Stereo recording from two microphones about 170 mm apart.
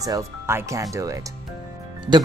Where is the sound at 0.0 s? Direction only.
15° right (ahead or behind).